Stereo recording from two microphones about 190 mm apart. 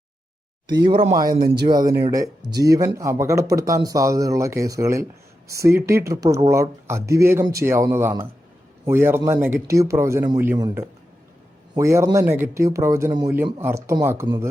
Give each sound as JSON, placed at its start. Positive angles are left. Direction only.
{"t": 0.9, "sound": "speech", "side_deg": -25}